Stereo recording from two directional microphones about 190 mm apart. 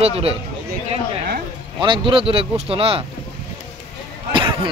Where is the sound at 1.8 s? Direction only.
25° right (ahead or behind).